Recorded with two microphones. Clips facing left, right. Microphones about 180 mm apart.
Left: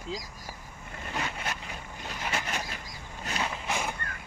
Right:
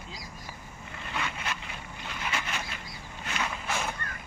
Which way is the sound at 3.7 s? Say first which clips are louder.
Even; 15° left (ahead or behind).